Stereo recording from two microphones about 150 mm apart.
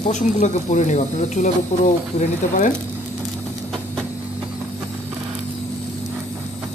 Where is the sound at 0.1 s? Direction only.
55° left (ahead or behind).